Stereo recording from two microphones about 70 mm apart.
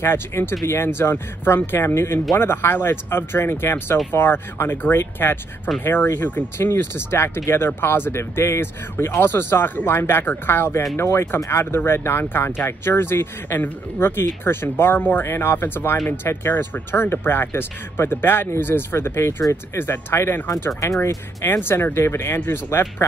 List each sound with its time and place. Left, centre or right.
0.0 s speech: left